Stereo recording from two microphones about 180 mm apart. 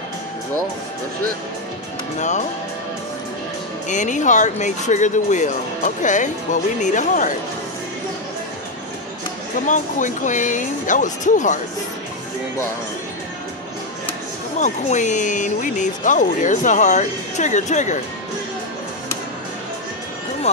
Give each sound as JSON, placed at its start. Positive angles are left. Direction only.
{"t": 2.1, "sound": "speech", "side_deg": 40}
{"t": 3.9, "sound": "speech", "side_deg": 45}
{"t": 9.7, "sound": "speech", "side_deg": 45}
{"t": 14.6, "sound": "speech", "side_deg": 40}
{"t": 20.5, "sound": "speech", "side_deg": 40}